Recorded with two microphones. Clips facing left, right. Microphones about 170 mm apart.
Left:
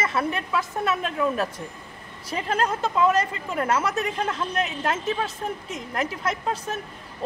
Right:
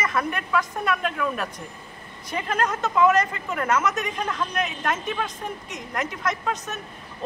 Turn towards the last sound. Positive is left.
turn(degrees=30)  # may be behind; listen again after turning